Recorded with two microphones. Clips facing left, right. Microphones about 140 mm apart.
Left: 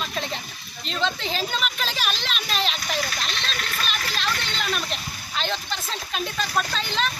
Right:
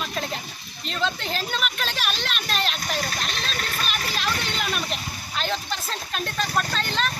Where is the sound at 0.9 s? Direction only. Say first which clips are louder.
Left 1 dB; centre (ahead or behind).